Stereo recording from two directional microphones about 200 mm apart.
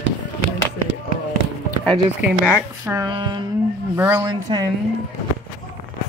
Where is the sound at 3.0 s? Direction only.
20° right (ahead or behind).